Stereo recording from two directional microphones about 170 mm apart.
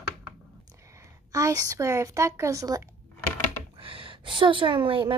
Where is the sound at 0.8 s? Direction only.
15° right (ahead or behind).